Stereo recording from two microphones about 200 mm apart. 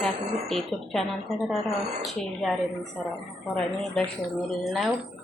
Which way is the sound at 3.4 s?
Centre (ahead or behind).